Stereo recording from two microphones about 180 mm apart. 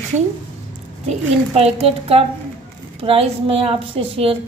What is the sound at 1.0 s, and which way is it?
A woman's voice, 35° right (ahead or behind).